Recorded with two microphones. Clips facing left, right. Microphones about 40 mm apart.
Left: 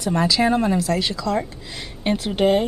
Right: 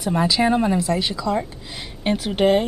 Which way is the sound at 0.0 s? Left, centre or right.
Centre.